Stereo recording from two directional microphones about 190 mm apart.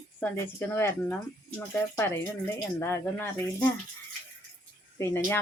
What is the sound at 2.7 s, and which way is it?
Speech, 15° left (ahead or behind).